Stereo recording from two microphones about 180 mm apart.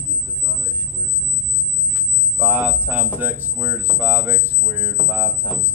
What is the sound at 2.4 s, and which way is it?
Speech, 10° right (ahead or behind).